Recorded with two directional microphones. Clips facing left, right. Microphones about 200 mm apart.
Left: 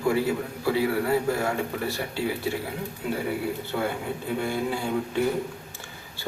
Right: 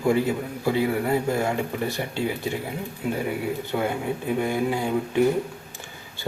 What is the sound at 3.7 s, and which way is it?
A man's voice, 20° right (ahead or behind).